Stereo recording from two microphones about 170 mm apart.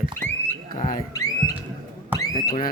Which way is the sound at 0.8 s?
55° left (ahead or behind).